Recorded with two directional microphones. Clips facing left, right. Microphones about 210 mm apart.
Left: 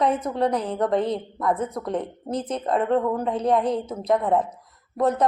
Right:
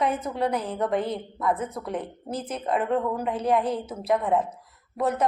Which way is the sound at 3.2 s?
30° left (ahead or behind).